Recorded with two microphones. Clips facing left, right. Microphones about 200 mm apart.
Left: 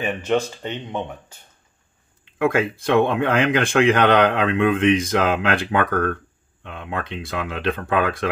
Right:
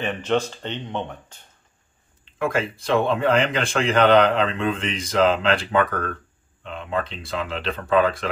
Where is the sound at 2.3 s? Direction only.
65° left (ahead or behind).